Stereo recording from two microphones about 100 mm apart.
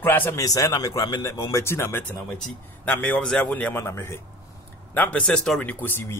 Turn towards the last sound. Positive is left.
turn(degrees=20)  # may be behind; listen again after turning